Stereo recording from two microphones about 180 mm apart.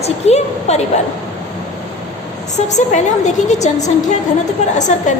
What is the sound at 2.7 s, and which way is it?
A woman's voice, 40° left (ahead or behind).